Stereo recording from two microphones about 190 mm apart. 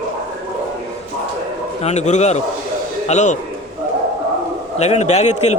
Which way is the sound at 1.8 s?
35° left (ahead or behind).